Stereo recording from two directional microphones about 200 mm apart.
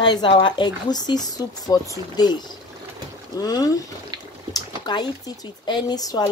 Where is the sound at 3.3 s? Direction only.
20° left (ahead or behind).